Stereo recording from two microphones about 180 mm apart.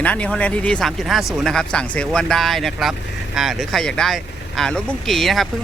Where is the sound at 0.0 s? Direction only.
5° left (ahead or behind).